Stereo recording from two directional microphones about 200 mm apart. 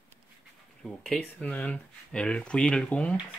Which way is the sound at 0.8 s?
Centre (ahead or behind).